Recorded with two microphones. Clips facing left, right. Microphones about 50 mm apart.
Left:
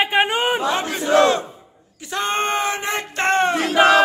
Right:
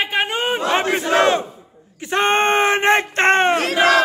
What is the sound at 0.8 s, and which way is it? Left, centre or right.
Battle cry, right.